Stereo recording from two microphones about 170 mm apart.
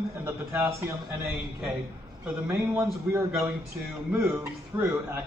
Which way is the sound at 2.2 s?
10° right (ahead or behind).